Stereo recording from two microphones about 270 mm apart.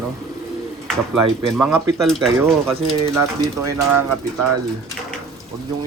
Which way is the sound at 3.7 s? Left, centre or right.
Centre.